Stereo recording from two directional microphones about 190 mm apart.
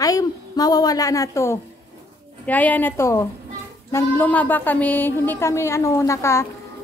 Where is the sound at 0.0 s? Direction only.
20° left (ahead or behind).